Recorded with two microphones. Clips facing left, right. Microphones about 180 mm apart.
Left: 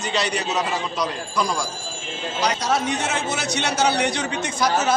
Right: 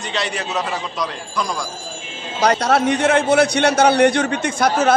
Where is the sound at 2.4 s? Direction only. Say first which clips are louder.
Right 6 dB; 60° right (ahead or behind).